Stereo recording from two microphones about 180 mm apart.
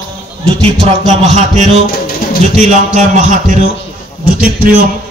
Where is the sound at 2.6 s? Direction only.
40° right (ahead or behind).